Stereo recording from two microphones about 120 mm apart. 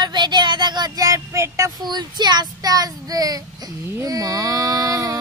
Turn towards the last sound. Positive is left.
turn(degrees=-30)  # may be behind; listen again after turning